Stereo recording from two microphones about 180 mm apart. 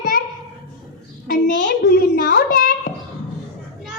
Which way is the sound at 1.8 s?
60° left (ahead or behind).